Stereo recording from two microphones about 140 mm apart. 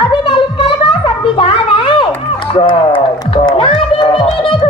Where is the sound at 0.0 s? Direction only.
35° left (ahead or behind).